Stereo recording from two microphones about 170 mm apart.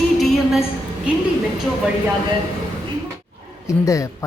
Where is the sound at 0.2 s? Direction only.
Centre (ahead or behind).